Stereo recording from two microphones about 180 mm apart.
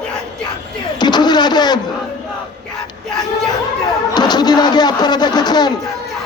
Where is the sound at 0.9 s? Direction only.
25° left (ahead or behind).